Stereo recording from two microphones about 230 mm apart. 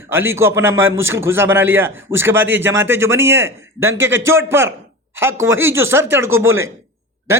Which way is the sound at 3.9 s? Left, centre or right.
Right.